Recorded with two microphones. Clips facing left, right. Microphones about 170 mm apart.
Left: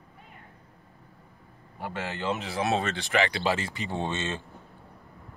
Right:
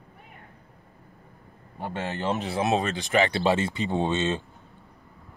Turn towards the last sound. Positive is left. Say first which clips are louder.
# right 6 dB
turn(degrees=-20)  # may be behind; listen again after turning